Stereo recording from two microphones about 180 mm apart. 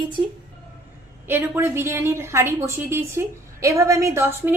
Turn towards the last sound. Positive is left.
turn(degrees=-15)  # may be behind; listen again after turning